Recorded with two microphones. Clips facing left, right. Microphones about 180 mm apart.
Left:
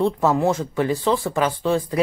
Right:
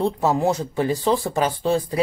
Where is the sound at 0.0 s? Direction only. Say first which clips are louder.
Left 1 dB; 35° right (ahead or behind).